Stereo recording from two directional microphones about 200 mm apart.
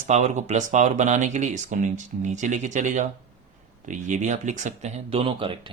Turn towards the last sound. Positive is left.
turn(degrees=-25)  # may be behind; listen again after turning